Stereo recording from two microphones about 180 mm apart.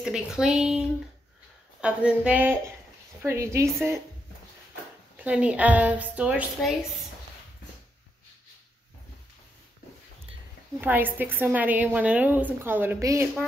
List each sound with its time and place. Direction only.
0.0 s a woman's voice: 5° right (ahead or behind)
5.1 s a woman's voice: 5° right (ahead or behind)
10.8 s a woman's voice: 10° right (ahead or behind)